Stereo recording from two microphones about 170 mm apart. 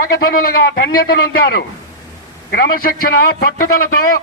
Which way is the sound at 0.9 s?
65° left (ahead or behind).